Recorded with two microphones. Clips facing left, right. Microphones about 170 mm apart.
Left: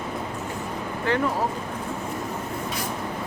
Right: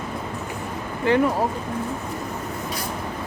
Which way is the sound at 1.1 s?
15° right (ahead or behind).